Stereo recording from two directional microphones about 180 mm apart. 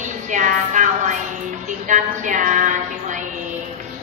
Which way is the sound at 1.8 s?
45° right (ahead or behind).